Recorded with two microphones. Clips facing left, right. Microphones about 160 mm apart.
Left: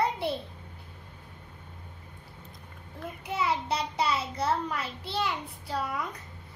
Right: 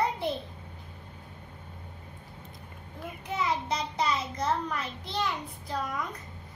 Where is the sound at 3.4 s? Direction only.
10° left (ahead or behind).